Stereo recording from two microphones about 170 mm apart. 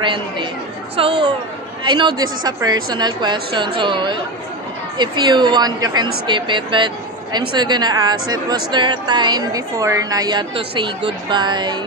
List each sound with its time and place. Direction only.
0.0 s speech: 30° right (ahead or behind)